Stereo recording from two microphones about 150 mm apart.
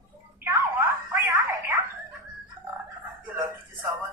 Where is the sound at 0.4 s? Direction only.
10° right (ahead or behind).